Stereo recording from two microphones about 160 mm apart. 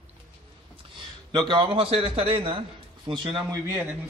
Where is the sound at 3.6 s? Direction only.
15° right (ahead or behind).